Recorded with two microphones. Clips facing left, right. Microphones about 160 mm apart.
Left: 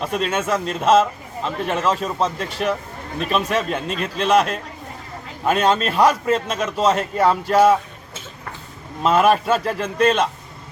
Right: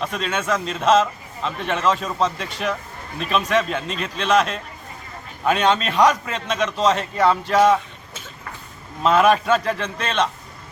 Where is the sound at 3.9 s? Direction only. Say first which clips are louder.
Left 3 dB; 45° left (ahead or behind).